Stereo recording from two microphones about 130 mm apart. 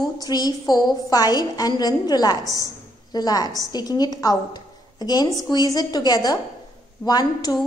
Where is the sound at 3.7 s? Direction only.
30° left (ahead or behind).